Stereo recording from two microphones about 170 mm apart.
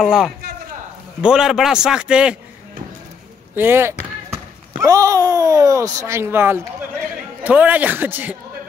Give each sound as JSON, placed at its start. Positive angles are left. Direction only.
{"t": 0.0, "sound": "a man's voice", "side_deg": 0}
{"t": 3.5, "sound": "a man's voice", "side_deg": -15}